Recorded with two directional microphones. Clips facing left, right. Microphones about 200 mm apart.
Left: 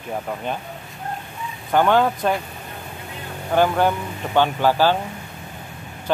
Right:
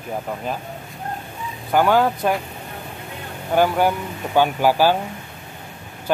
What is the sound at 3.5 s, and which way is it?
Speech, 10° right (ahead or behind).